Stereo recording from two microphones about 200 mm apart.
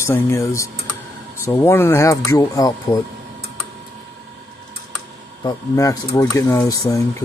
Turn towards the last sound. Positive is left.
turn(degrees=15)  # may be behind; listen again after turning